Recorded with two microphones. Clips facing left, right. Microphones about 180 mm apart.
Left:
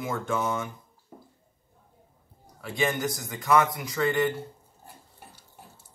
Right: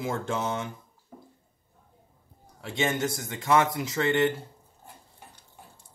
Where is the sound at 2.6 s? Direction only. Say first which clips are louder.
Even; 25° right (ahead or behind).